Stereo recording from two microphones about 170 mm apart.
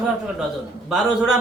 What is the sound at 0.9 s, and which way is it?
Speech, 5° right (ahead or behind).